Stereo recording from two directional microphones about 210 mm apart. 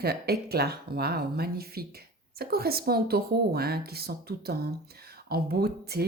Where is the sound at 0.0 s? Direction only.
50° right (ahead or behind).